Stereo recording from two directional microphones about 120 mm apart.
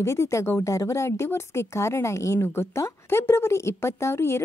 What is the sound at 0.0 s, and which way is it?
Speech, 25° left (ahead or behind).